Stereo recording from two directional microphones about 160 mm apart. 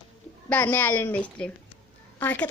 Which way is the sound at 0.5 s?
10° left (ahead or behind).